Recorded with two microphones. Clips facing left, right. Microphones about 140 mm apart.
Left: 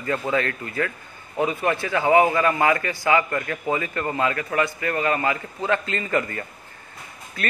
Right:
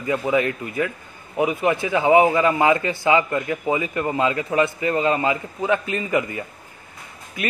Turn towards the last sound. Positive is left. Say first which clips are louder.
# right 2 dB
turn(degrees=-15)  # may be behind; listen again after turning